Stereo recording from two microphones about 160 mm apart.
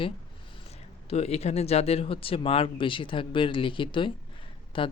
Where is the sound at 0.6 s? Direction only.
40° left (ahead or behind).